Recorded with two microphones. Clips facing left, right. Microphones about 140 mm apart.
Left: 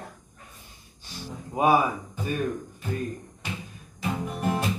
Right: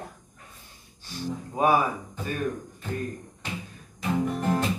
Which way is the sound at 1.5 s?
15° left (ahead or behind).